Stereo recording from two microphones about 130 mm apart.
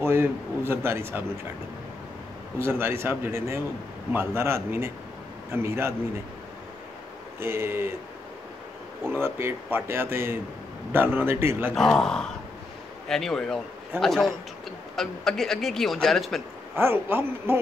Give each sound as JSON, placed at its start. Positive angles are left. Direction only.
{"t": 0.0, "sound": "a man's voice", "side_deg": -20}
{"t": 2.6, "sound": "a man's voice", "side_deg": -20}
{"t": 7.3, "sound": "a man's voice", "side_deg": -20}
{"t": 9.0, "sound": "speech", "side_deg": -20}
{"t": 11.7, "sound": "speech", "side_deg": 5}
{"t": 16.7, "sound": "speech", "side_deg": -15}